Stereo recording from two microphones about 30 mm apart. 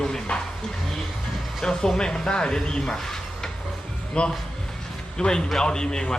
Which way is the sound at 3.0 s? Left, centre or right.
Centre.